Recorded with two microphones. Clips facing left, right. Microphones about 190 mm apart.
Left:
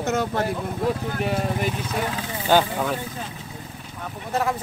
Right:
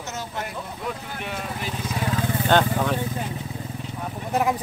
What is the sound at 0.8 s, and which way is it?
Speech, 40° left (ahead or behind).